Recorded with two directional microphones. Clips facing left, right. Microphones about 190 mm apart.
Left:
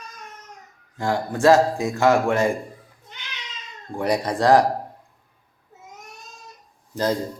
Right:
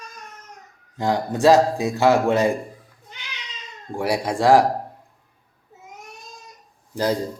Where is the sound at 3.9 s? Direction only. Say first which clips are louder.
Even; 10° right (ahead or behind).